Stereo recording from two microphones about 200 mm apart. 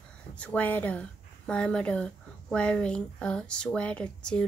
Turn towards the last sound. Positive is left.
turn(degrees=5)  # may be behind; listen again after turning